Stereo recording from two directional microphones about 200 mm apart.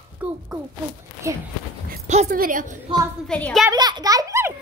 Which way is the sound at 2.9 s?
30° right (ahead or behind).